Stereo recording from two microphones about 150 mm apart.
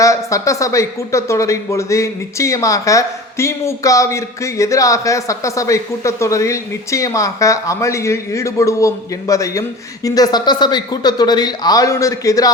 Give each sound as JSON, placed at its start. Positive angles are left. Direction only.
{"t": 0.0, "sound": "speech", "side_deg": 20}